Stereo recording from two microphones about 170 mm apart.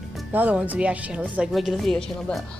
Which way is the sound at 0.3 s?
10° right (ahead or behind).